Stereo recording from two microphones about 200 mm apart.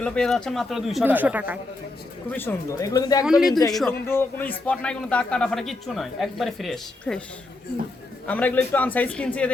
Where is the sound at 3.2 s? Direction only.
5° right (ahead or behind).